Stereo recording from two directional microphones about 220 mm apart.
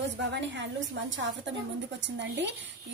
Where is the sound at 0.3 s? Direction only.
55° right (ahead or behind).